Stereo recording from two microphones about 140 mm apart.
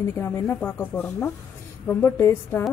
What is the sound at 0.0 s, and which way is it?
Speech, 15° left (ahead or behind).